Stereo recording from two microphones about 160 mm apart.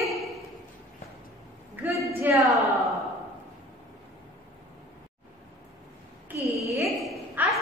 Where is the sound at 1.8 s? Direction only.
15° right (ahead or behind).